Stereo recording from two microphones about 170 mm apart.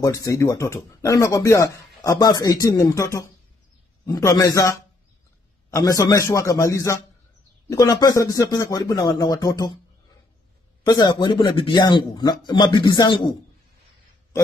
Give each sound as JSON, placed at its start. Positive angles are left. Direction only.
{"t": 0.0, "sound": "speech", "side_deg": 20}
{"t": 10.9, "sound": "speech", "side_deg": 25}